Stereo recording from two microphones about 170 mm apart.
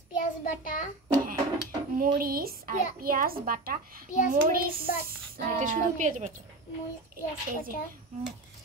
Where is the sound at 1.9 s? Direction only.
55° right (ahead or behind).